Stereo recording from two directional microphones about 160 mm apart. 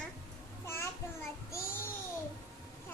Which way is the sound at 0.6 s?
15° left (ahead or behind).